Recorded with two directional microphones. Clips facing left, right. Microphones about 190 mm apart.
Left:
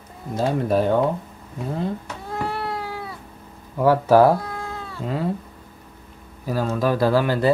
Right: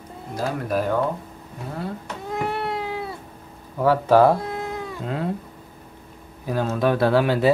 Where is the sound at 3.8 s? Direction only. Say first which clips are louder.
Left 1 dB; 10° left (ahead or behind).